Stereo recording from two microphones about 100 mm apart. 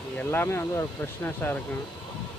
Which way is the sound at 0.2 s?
20° left (ahead or behind).